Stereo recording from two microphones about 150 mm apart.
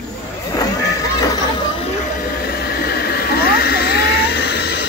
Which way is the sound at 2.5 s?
90° left.